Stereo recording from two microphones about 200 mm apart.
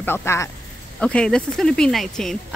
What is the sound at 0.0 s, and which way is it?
Speech, 10° left (ahead or behind).